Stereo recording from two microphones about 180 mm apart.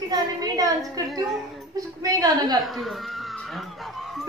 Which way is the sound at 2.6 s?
Centre (ahead or behind).